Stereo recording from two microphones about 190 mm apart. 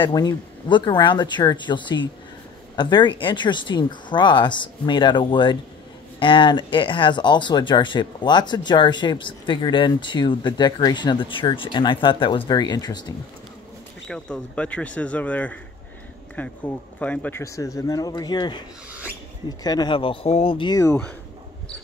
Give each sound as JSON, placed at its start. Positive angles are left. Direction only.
{"t": 0.0, "sound": "speech", "side_deg": 20}
{"t": 14.0, "sound": "speech", "side_deg": 5}
{"t": 18.9, "sound": "rodents", "side_deg": -10}
{"t": 19.6, "sound": "speech", "side_deg": 20}